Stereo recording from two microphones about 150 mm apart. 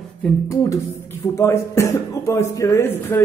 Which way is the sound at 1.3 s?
20° left (ahead or behind).